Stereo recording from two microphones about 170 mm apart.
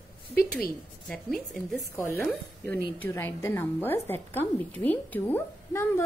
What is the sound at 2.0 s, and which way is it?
A woman's voice, 15° left (ahead or behind).